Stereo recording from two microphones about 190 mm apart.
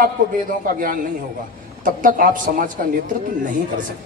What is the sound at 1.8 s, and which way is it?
A man's voice, 45° right (ahead or behind).